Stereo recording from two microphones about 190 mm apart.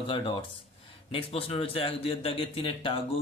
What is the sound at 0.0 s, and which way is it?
A man's voice, 30° left (ahead or behind).